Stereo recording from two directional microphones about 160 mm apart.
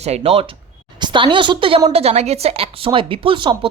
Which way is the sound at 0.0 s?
40° right (ahead or behind).